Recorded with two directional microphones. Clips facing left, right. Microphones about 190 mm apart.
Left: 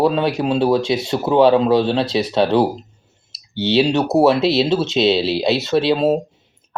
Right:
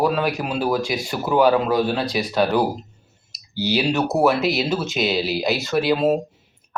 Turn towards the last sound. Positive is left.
turn(degrees=25)  # may be behind; listen again after turning